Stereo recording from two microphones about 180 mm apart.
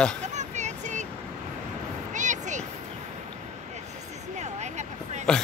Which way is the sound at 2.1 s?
45° right (ahead or behind).